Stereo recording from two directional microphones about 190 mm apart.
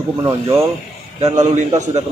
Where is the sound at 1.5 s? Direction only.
40° right (ahead or behind).